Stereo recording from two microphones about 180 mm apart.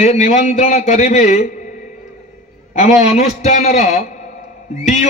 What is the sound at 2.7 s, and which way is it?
A man's voice, 40° left (ahead or behind).